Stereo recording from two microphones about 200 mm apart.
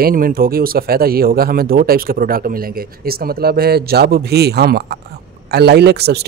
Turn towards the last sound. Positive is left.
turn(degrees=-55)  # may be behind; listen again after turning